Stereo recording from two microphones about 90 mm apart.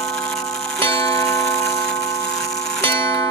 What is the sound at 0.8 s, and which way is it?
Tick-tock, 35° left (ahead or behind).